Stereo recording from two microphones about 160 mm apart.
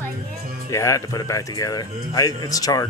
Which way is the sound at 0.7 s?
20° left (ahead or behind).